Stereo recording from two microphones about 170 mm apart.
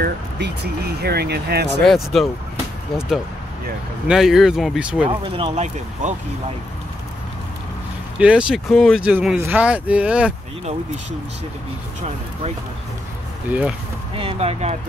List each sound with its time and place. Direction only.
0.0 s speech: 70° right (ahead or behind)
1.8 s speech: centre (ahead or behind)
4.1 s speech: centre (ahead or behind)
5.0 s speech: 30° right (ahead or behind)
8.2 s speech: 5° right (ahead or behind)
13.5 s speech: 10° right (ahead or behind)
14.1 s speech: 35° right (ahead or behind)